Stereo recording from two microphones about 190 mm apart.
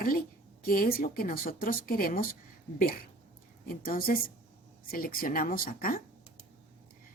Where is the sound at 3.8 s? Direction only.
50° left (ahead or behind).